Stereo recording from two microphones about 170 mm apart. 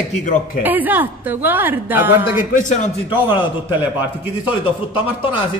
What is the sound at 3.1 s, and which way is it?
Speech, 30° left (ahead or behind).